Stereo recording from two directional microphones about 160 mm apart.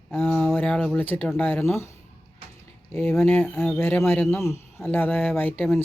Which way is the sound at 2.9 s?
15° left (ahead or behind).